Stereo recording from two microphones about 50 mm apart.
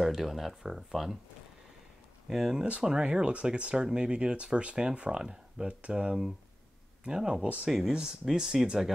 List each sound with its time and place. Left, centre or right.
0.0 s speech: centre
2.2 s speech: centre
2.8 s speech: centre
7.4 s speech: right
7.9 s speech: centre